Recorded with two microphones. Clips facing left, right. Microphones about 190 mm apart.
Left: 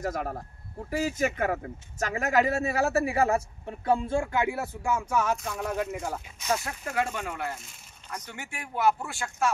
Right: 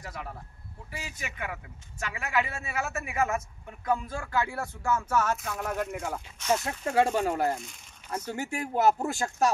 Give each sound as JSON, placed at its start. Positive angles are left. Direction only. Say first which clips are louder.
{"t": 0.0, "sound": "speech", "louder": "left 9 dB", "side_deg": 45}
{"t": 5.4, "sound": "speech", "louder": "left 1 dB", "side_deg": 0}
{"t": 6.6, "sound": "speech", "louder": "right 5 dB", "side_deg": -30}